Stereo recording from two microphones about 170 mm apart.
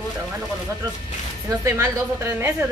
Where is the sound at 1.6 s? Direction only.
15° right (ahead or behind).